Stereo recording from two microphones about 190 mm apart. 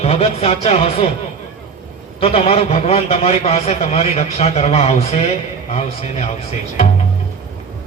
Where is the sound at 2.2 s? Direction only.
30° left (ahead or behind).